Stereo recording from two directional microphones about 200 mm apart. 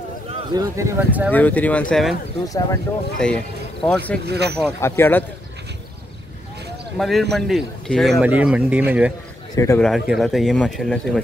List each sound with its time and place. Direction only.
0.3 s speech: 15° right (ahead or behind)
1.3 s speech: 10° left (ahead or behind)
2.4 s speech: 15° left (ahead or behind)
3.2 s speech: 5° left (ahead or behind)
4.3 s speech: 55° right (ahead or behind)
4.7 s speech: 10° left (ahead or behind)
7.0 s speech: centre (ahead or behind)